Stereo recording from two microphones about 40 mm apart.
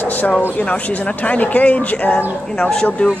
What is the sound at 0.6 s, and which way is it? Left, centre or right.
Speech, left.